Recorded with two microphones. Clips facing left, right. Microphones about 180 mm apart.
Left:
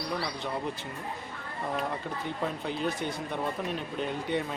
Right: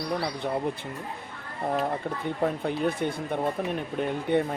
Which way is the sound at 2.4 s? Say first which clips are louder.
Right 6 dB; 55° right (ahead or behind).